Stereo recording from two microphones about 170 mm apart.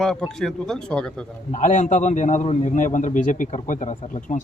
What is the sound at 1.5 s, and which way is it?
A man's voice, 45° left (ahead or behind).